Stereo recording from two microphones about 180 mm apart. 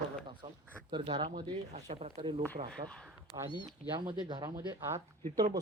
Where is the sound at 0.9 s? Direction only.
25° right (ahead or behind).